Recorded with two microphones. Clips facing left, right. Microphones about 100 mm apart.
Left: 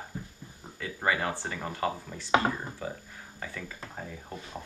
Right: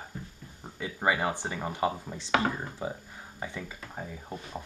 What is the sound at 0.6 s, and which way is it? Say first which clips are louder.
Speech: right 2 dB; 20° right (ahead or behind).